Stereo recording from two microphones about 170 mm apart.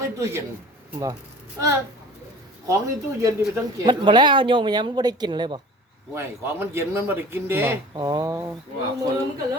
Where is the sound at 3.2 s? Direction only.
20° right (ahead or behind).